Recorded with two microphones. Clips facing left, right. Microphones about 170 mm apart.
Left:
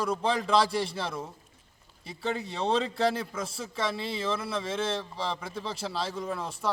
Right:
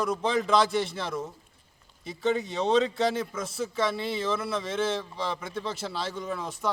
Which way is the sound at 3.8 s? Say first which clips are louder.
Right 2 dB; centre (ahead or behind).